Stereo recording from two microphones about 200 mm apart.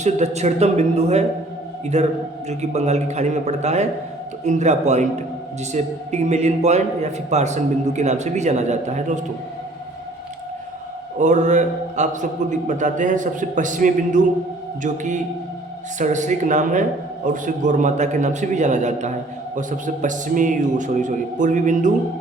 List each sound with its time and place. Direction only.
0.0 s a man's voice: 35° right (ahead or behind)
11.2 s a man's voice: 35° right (ahead or behind)